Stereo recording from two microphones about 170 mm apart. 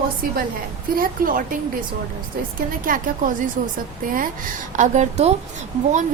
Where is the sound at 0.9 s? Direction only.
55° right (ahead or behind).